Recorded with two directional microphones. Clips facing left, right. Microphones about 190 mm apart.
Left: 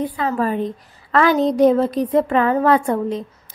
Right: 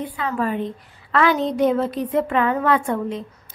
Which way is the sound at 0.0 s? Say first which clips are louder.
Left 4 dB; 40° left (ahead or behind).